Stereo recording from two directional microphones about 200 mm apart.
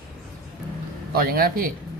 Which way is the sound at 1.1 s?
45° right (ahead or behind).